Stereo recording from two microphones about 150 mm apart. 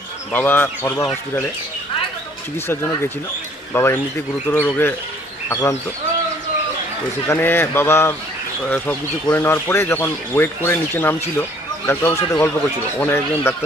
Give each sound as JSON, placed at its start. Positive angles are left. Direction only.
{"t": 0.3, "sound": "speech", "side_deg": 15}
{"t": 3.7, "sound": "speech", "side_deg": 15}
{"t": 7.2, "sound": "speech", "side_deg": 15}